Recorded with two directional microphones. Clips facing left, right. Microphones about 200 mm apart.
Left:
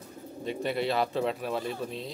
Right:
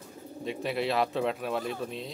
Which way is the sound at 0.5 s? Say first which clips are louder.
Left 1 dB; centre (ahead or behind).